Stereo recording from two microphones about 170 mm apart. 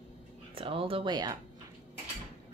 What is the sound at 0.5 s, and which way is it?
Speech, 30° right (ahead or behind).